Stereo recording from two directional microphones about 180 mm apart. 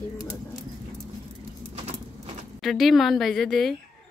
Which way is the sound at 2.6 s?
Centre (ahead or behind).